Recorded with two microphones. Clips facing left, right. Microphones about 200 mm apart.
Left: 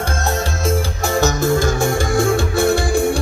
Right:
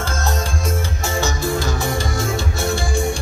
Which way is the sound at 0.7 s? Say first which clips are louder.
Left 5 dB; 35° left (ahead or behind).